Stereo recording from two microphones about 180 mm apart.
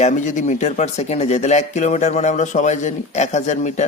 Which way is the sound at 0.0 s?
40° left (ahead or behind).